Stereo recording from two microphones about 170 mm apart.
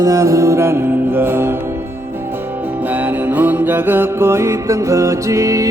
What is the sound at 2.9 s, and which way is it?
Music, 10° right (ahead or behind).